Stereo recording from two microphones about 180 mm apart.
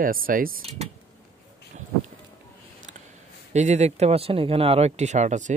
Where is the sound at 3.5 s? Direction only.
40° right (ahead or behind).